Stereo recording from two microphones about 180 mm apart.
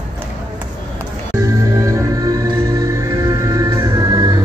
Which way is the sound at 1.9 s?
20° right (ahead or behind).